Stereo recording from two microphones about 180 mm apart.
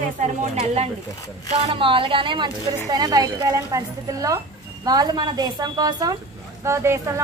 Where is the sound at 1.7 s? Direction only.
30° right (ahead or behind).